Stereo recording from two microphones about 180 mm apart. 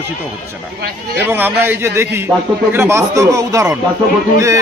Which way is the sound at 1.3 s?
10° right (ahead or behind).